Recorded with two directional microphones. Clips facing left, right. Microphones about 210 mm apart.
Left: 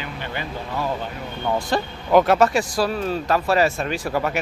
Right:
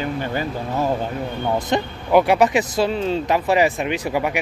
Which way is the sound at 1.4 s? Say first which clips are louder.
Right 1 dB; 15° right (ahead or behind).